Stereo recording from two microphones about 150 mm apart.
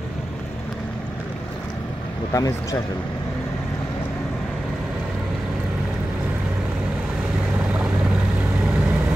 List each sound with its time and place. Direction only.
2.3 s speech: 20° left (ahead or behind)